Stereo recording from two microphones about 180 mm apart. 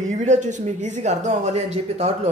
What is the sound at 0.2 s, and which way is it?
Speech, 40° right (ahead or behind).